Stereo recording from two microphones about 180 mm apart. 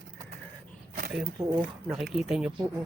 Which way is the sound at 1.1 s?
5° right (ahead or behind).